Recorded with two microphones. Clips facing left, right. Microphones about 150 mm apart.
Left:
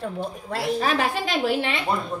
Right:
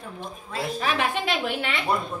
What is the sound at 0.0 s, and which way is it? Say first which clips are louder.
Speech: left 7 dB; 70° left (ahead or behind).